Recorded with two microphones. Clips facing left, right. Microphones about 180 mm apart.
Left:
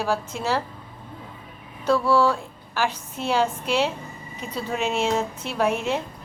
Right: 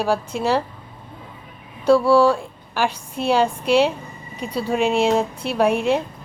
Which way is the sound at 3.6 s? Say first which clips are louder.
Right 6 dB; 15° right (ahead or behind).